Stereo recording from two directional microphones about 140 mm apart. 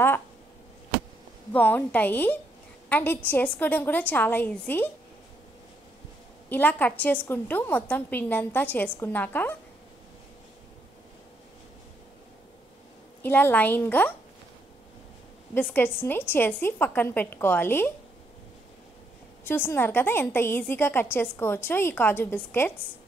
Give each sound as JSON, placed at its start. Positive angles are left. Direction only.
{"t": 1.5, "sound": "a woman's voice", "side_deg": 15}
{"t": 6.5, "sound": "a woman's voice", "side_deg": 10}
{"t": 13.2, "sound": "a woman's voice", "side_deg": 15}
{"t": 15.5, "sound": "a woman's voice", "side_deg": 15}
{"t": 19.4, "sound": "a woman's voice", "side_deg": 15}